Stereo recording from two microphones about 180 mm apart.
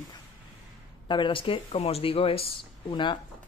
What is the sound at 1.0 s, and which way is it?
Speech, 25° left (ahead or behind).